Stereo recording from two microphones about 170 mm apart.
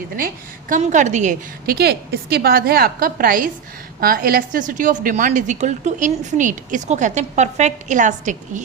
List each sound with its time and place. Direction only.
0.7 s a woman's voice: 45° right (ahead or behind)
1.7 s a woman's voice: 70° right (ahead or behind); by 8.6 s 45° right (ahead or behind)